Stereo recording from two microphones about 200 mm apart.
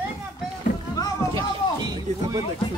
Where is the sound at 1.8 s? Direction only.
20° right (ahead or behind).